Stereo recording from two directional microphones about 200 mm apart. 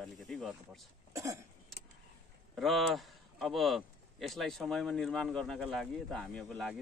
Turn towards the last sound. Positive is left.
turn(degrees=5)  # may be behind; listen again after turning